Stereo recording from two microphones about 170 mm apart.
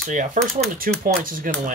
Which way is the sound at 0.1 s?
50° right (ahead or behind).